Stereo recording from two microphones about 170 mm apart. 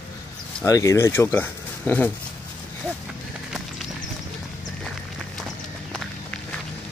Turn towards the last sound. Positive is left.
turn(degrees=0)  # may be behind; listen again after turning